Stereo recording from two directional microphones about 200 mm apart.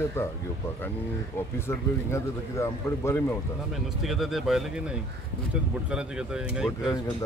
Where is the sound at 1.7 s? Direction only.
15° left (ahead or behind).